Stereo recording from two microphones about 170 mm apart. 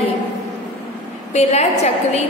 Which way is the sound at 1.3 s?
40° left (ahead or behind).